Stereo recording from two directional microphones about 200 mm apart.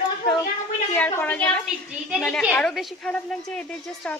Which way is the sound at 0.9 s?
10° left (ahead or behind).